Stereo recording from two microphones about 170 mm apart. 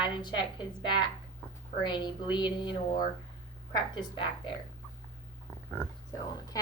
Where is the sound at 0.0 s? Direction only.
25° left (ahead or behind).